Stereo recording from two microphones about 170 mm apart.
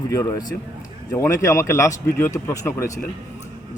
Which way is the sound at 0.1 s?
20° left (ahead or behind).